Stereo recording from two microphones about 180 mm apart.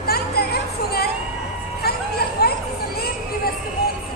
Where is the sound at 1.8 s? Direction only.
60° left (ahead or behind).